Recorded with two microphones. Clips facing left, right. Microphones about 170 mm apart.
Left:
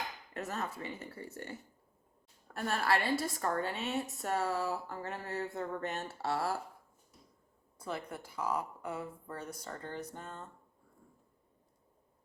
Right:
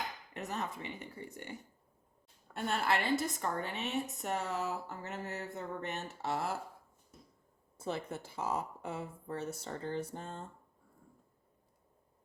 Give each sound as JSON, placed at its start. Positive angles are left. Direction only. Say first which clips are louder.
{"t": 0.3, "sound": "speech", "louder": "left 1 dB", "side_deg": -20}
{"t": 2.6, "sound": "speech", "louder": "left 1 dB", "side_deg": -20}
{"t": 7.8, "sound": "speech", "louder": "right 2 dB", "side_deg": -25}